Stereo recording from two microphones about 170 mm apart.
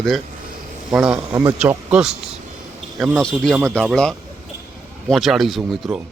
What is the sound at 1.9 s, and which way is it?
Speech, 5° right (ahead or behind).